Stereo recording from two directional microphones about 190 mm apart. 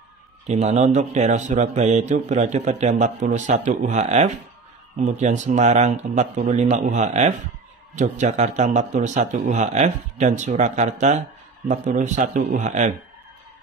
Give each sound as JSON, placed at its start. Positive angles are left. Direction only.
{"t": 0.5, "sound": "speech", "side_deg": -35}